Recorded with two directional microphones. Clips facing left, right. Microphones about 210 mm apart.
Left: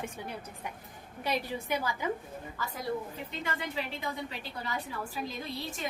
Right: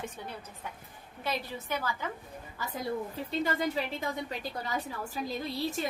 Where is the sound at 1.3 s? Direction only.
15° left (ahead or behind).